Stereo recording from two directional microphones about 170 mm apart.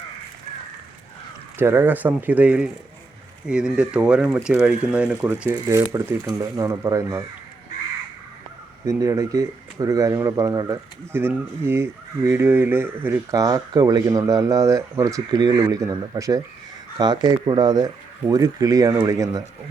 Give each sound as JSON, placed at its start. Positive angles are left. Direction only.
{"t": 1.5, "sound": "speech", "side_deg": -15}
{"t": 5.5, "sound": "speech", "side_deg": -20}
{"t": 8.8, "sound": "speech", "side_deg": -20}